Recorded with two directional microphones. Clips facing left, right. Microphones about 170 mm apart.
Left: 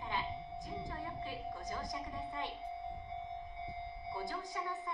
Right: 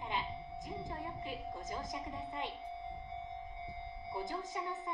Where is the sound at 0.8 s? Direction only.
20° right (ahead or behind).